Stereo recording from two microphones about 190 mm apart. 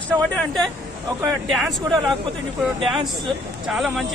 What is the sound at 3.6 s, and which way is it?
Speech, centre (ahead or behind).